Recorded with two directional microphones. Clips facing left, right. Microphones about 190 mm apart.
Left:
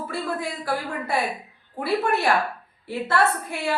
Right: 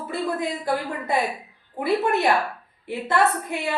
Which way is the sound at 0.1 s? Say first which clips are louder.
Right 5 dB; 20° right (ahead or behind).